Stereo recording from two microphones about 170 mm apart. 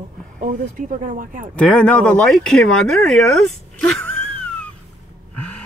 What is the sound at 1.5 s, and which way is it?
Speech, 5° left (ahead or behind).